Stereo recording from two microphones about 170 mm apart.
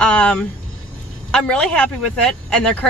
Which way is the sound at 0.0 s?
5° left (ahead or behind).